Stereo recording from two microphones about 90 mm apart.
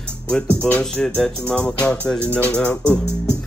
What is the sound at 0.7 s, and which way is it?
Music, 15° left (ahead or behind).